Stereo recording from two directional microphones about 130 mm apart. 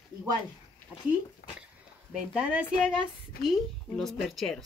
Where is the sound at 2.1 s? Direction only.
5° right (ahead or behind).